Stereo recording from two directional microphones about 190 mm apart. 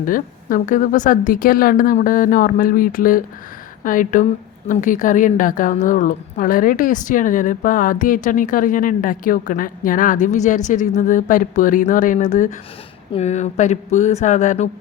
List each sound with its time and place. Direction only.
0.0 s a woman's voice: 45° left (ahead or behind)